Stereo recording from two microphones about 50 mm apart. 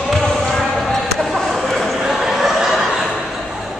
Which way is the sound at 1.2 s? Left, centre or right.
Centre.